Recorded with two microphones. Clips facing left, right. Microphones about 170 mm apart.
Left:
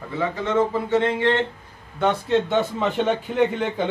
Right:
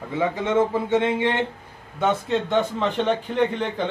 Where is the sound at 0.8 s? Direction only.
15° right (ahead or behind).